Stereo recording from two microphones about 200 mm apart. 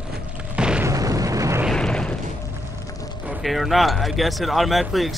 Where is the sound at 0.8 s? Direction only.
15° right (ahead or behind).